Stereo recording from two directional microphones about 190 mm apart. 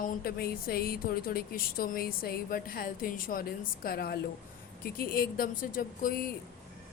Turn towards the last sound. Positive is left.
turn(degrees=45)  # may be behind; listen again after turning